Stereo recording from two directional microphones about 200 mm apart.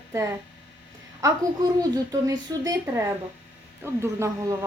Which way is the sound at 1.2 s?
15° right (ahead or behind).